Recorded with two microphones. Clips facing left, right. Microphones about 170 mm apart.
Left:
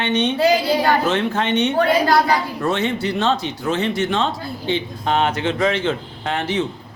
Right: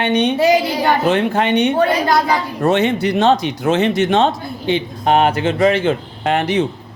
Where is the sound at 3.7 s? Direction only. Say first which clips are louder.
Right 6 dB; 75° right (ahead or behind).